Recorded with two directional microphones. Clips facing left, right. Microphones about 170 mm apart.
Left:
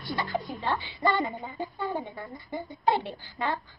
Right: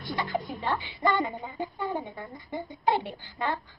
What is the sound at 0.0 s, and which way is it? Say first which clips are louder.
Music: even; 20° right (ahead or behind).